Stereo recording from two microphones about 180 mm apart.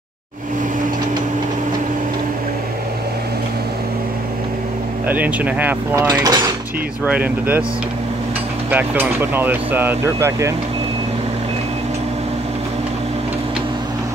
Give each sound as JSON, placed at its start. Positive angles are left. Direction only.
{"t": 5.0, "sound": "speech", "side_deg": -10}
{"t": 6.0, "sound": "mechanisms", "side_deg": -25}
{"t": 7.1, "sound": "speech", "side_deg": -10}
{"t": 8.6, "sound": "speech", "side_deg": -10}